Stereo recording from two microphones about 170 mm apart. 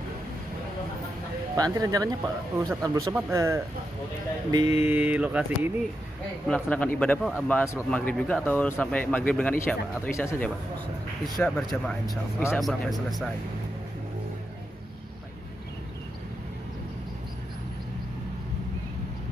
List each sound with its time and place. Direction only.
1.6 s speech: 20° right (ahead or behind)
3.2 s mantra: 15° right (ahead or behind)
4.5 s speech: 25° right (ahead or behind)
4.8 s mantra: 10° right (ahead or behind)
6.4 s speech: 5° left (ahead or behind)
11.2 s speech: 5° left (ahead or behind)